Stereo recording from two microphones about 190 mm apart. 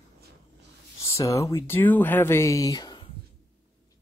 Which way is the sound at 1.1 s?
15° left (ahead or behind).